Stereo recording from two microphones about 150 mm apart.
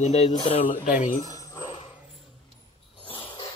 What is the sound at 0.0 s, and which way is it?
Speech, 45° left (ahead or behind).